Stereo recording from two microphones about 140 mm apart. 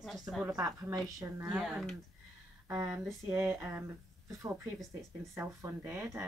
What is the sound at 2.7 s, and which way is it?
Speech, 20° right (ahead or behind).